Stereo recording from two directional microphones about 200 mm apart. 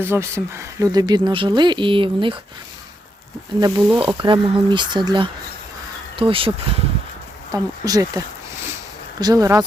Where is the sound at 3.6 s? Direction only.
20° right (ahead or behind).